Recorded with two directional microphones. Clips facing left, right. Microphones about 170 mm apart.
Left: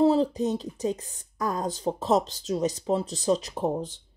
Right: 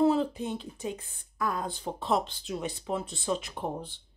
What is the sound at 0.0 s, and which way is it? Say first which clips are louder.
Speech: left 4 dB; 35° left (ahead or behind).